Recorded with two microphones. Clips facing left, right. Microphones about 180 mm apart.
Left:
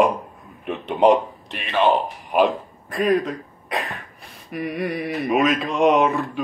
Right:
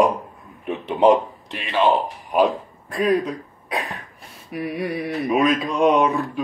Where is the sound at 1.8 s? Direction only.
15° left (ahead or behind).